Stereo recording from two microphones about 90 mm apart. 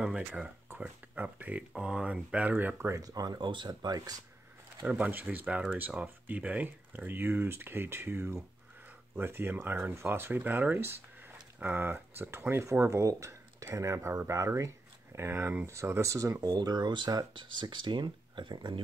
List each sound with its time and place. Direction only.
0.0 s speech: 10° right (ahead or behind); by 3.0 s 25° right (ahead or behind)
3.0 s speech: 45° right (ahead or behind)
3.3 s speech: 60° right (ahead or behind)
4.8 s speech: 15° right (ahead or behind); by 18.8 s 60° right (ahead or behind)